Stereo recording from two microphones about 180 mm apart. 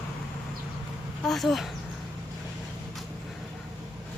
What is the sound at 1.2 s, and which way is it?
Speech, centre (ahead or behind).